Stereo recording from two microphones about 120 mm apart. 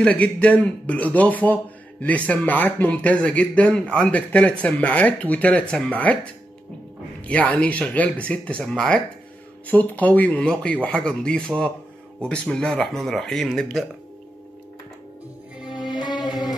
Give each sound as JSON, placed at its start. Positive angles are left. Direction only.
{"t": 0.0, "sound": "speech", "side_deg": 10}
{"t": 7.2, "sound": "speech", "side_deg": 10}
{"t": 15.9, "sound": "music", "side_deg": 35}